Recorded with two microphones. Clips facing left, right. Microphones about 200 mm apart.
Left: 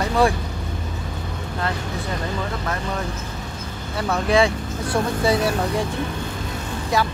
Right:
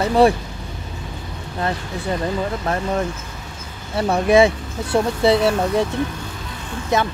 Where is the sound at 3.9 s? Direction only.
30° right (ahead or behind).